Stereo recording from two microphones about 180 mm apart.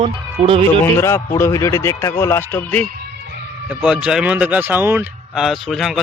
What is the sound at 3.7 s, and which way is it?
Speech, 5° right (ahead or behind).